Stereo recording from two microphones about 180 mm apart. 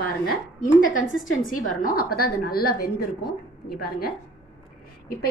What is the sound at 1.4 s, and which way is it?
A woman's voice, 50° left (ahead or behind).